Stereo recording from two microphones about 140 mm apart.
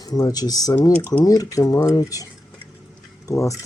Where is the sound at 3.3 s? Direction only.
20° left (ahead or behind).